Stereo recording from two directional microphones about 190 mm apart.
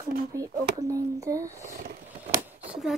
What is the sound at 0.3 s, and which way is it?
Speech, 15° right (ahead or behind).